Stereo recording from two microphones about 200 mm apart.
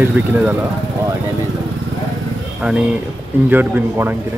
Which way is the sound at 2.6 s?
5° right (ahead or behind).